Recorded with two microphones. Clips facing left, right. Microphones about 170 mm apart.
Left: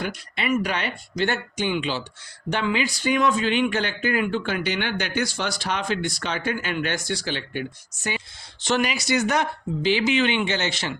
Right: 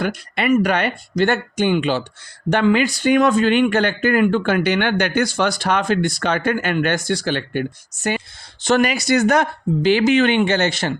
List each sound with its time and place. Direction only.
0.0 s speech: 55° right (ahead or behind)